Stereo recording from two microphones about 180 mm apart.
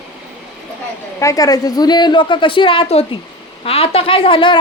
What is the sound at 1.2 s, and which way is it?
A woman's voice, 20° left (ahead or behind).